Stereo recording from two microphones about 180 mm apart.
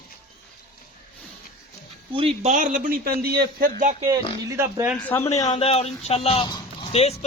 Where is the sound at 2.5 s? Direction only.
45° right (ahead or behind).